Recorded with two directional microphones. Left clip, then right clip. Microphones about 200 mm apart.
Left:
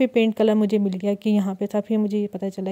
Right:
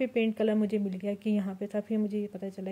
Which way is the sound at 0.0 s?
45° left (ahead or behind).